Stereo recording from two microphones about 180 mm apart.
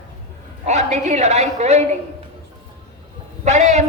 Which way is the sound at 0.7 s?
40° right (ahead or behind).